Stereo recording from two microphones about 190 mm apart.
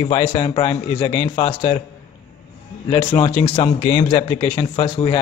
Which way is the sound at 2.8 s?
30° left (ahead or behind).